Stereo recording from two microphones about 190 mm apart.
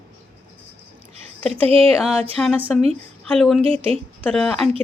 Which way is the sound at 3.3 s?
Centre (ahead or behind).